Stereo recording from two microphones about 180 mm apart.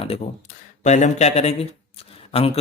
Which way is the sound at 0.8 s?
40° left (ahead or behind).